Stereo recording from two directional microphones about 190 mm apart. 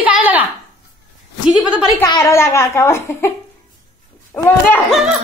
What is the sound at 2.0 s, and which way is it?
A child's voice, 15° left (ahead or behind).